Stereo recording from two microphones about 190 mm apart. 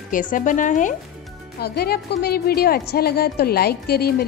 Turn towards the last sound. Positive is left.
turn(degrees=55)  # may be behind; listen again after turning